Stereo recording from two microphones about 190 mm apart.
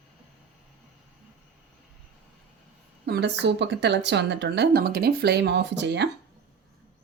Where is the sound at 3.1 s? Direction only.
65° right (ahead or behind).